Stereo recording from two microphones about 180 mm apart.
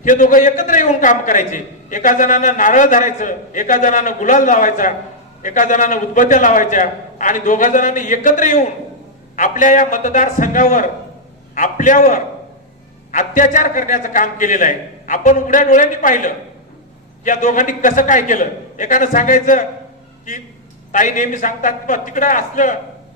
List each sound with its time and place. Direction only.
0.0 s a man's voice: 45° left (ahead or behind)
20.9 s a man's voice: 45° left (ahead or behind)